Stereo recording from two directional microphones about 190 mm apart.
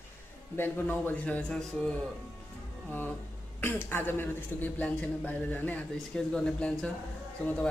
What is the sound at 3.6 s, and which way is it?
A man's voice, 10° left (ahead or behind).